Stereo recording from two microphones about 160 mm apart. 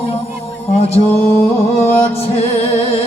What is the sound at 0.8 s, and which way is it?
Music, 40° left (ahead or behind).